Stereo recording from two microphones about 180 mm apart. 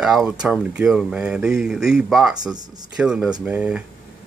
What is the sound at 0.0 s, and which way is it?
Speech, 5° right (ahead or behind).